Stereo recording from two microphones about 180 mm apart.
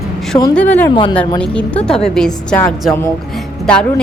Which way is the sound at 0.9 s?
30° left (ahead or behind).